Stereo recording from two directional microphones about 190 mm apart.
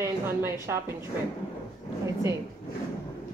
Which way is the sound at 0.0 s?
15° right (ahead or behind).